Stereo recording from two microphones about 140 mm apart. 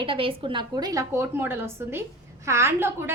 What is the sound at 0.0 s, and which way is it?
A woman's voice, 40° right (ahead or behind).